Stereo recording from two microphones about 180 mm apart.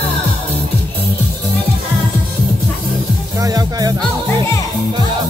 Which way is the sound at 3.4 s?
20° right (ahead or behind).